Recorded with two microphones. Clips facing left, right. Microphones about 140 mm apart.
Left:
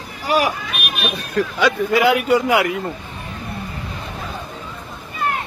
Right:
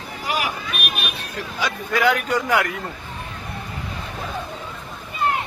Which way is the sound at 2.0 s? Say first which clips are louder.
Left 3 dB; 5° left (ahead or behind).